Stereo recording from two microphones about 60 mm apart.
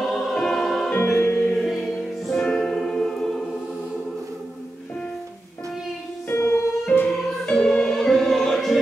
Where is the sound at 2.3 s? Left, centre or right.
Centre.